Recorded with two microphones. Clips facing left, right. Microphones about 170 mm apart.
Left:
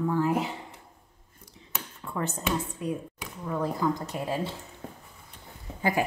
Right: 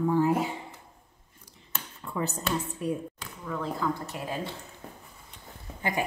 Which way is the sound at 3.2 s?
15° left (ahead or behind).